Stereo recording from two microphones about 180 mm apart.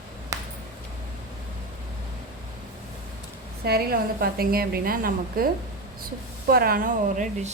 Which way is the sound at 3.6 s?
60° right (ahead or behind).